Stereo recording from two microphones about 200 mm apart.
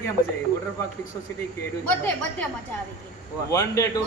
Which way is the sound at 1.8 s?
10° left (ahead or behind).